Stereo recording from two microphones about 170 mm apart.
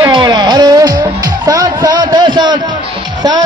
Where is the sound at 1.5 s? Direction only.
20° right (ahead or behind).